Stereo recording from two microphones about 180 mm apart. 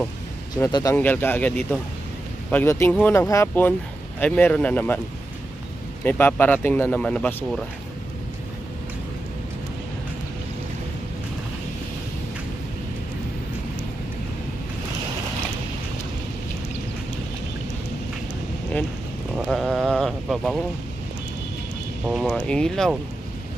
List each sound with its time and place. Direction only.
0.7 s speech: 25° left (ahead or behind)
0.9 s speech: 10° left (ahead or behind)
2.5 s speech: 15° left (ahead or behind)
6.0 s speech: 10° left (ahead or behind)
19.3 s sheep: centre (ahead or behind)
22.0 s speech: centre (ahead or behind)